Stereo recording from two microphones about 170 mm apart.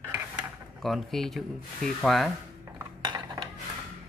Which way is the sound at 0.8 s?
Centre (ahead or behind).